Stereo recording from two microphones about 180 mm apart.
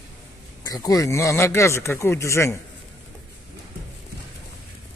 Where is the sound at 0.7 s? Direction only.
20° left (ahead or behind).